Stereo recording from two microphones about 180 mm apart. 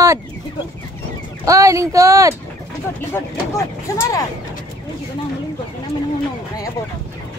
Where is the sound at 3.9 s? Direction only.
20° left (ahead or behind).